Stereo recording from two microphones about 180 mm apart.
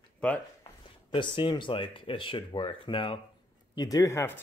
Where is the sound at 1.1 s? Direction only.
25° left (ahead or behind).